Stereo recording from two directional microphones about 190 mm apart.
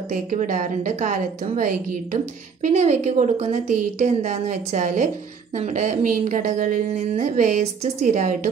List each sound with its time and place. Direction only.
0.1 s a woman's voice: 40° right (ahead or behind)